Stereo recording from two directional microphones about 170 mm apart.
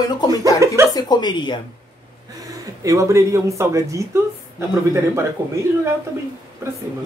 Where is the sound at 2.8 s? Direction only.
20° right (ahead or behind).